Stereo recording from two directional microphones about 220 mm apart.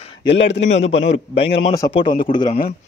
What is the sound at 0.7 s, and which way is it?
Speech, 30° left (ahead or behind).